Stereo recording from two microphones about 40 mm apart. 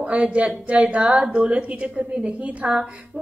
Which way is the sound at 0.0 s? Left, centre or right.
Right.